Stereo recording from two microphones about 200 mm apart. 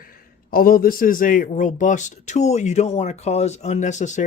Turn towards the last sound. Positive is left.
turn(degrees=35)  # may be behind; listen again after turning